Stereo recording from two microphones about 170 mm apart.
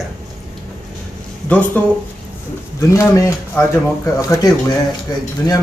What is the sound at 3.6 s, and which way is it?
Speech, 15° left (ahead or behind).